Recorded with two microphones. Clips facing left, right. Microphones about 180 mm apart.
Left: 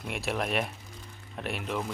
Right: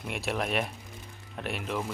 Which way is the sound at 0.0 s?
Centre (ahead or behind).